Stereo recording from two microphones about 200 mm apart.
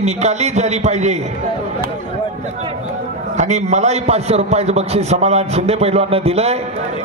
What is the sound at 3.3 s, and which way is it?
A man's voice, 35° right (ahead or behind).